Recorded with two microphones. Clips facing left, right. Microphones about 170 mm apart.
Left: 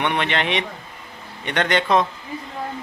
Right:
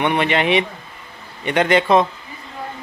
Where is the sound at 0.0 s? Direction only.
5° right (ahead or behind).